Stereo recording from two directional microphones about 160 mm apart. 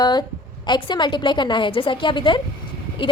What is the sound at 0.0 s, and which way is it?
A woman's voice, 25° left (ahead or behind).